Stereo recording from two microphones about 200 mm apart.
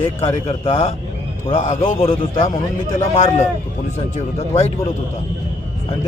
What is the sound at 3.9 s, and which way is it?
Speech, 30° left (ahead or behind).